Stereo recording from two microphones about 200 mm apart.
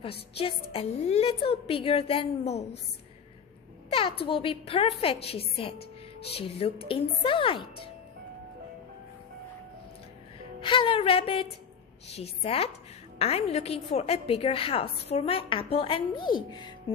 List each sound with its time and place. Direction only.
0.0 s a woman's voice: 30° left (ahead or behind)
3.9 s a woman's voice: 30° left (ahead or behind)
10.6 s a woman's voice: 25° left (ahead or behind)